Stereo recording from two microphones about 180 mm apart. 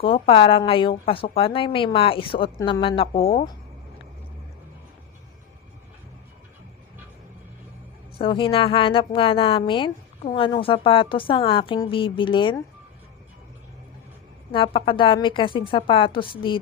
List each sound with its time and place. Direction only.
0.0 s speech: 30° left (ahead or behind)
2.6 s speech: 20° left (ahead or behind)
2.8 s speech: 30° left (ahead or behind)
8.2 s speech: 30° left (ahead or behind)
14.5 s speech: 30° left (ahead or behind)